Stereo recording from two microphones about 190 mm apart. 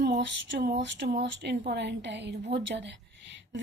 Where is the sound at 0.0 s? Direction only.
60° right (ahead or behind).